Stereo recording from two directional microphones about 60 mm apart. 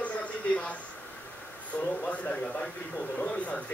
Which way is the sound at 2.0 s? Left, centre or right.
Left.